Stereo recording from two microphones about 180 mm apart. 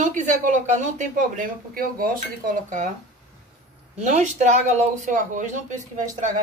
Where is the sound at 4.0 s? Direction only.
40° right (ahead or behind).